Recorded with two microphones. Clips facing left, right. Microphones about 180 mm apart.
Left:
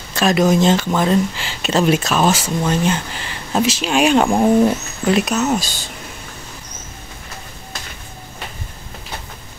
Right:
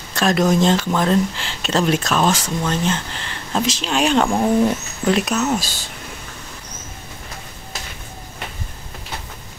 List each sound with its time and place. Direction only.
0.1 s speech: 5° left (ahead or behind)
5.0 s speech: 5° left (ahead or behind)